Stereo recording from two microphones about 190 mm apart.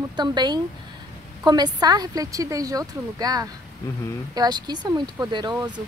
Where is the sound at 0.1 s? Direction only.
20° right (ahead or behind).